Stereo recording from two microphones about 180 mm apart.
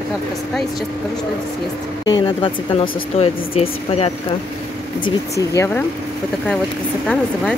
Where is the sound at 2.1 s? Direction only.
25° left (ahead or behind).